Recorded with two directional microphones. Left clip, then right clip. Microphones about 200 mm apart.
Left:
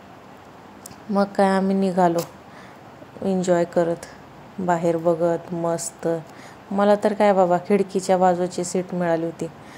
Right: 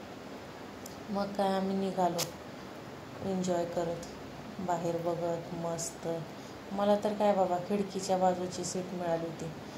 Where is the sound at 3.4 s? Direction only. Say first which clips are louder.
Left 13 dB; 50° left (ahead or behind).